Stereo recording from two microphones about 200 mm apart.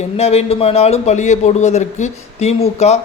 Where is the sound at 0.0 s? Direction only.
30° left (ahead or behind).